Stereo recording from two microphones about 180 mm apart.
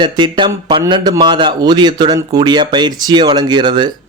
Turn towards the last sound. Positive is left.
turn(degrees=-25)  # may be behind; listen again after turning